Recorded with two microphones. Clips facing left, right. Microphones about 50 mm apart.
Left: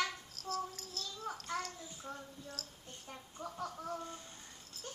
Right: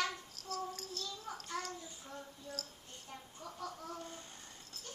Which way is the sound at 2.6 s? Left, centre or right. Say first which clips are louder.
Right 2 dB; centre.